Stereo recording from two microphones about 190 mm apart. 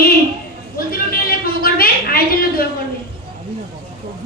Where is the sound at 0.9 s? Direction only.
50° left (ahead or behind).